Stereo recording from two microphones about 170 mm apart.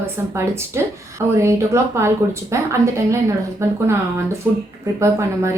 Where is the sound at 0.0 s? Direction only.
15° right (ahead or behind).